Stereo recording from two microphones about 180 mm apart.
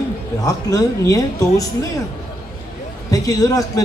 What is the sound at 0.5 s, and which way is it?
A man's voice, 20° left (ahead or behind).